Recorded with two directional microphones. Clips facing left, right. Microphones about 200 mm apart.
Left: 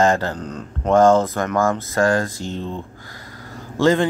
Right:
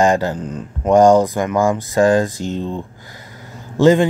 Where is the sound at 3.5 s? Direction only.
15° right (ahead or behind).